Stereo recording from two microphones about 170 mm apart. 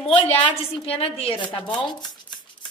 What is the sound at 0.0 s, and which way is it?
A woman's voice, 35° left (ahead or behind).